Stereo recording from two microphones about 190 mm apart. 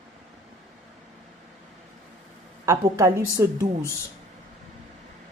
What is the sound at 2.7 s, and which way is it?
A woman's voice, 15° right (ahead or behind).